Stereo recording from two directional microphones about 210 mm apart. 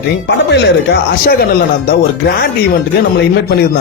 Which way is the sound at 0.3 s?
55° left (ahead or behind).